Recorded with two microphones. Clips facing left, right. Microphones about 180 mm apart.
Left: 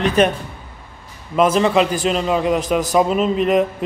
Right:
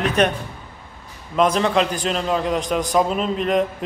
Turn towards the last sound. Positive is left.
turn(degrees=5)  # may be behind; listen again after turning